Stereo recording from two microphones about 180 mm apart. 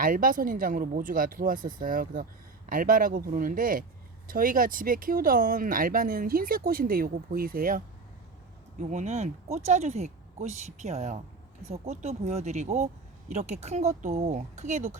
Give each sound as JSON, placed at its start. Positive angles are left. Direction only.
{"t": 0.0, "sound": "speech", "side_deg": -50}
{"t": 8.8, "sound": "speech", "side_deg": -40}